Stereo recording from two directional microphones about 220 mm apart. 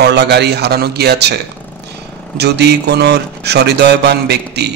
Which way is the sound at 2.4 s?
50° right (ahead or behind).